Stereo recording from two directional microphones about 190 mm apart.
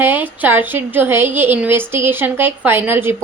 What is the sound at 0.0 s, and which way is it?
A woman's voice, 10° right (ahead or behind).